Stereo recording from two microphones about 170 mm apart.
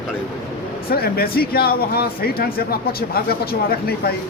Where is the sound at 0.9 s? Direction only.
65° left (ahead or behind).